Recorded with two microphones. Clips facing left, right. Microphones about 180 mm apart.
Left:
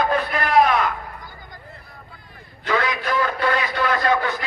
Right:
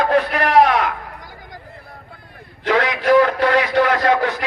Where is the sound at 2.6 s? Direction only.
80° right.